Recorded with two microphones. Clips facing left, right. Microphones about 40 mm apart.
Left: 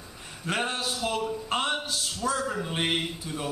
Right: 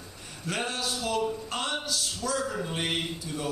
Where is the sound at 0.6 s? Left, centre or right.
Left.